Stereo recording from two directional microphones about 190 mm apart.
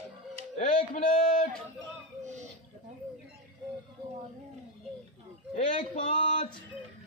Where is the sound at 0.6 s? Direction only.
45° left (ahead or behind).